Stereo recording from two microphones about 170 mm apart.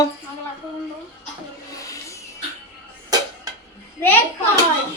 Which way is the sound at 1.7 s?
20° left (ahead or behind).